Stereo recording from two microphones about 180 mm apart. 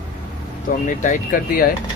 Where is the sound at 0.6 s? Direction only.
45° left (ahead or behind).